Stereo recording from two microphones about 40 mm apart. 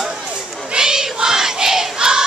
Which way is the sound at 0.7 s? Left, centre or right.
Centre.